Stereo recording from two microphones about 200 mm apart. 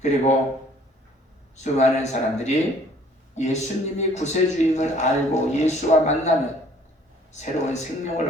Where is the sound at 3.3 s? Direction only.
35° left (ahead or behind).